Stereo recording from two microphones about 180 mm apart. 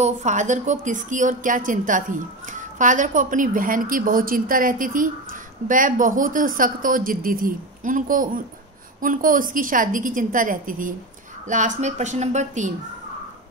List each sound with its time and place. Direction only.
0.0 s a woman's voice: 40° right (ahead or behind)